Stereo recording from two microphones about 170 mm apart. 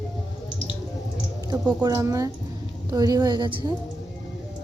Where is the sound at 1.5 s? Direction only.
25° right (ahead or behind).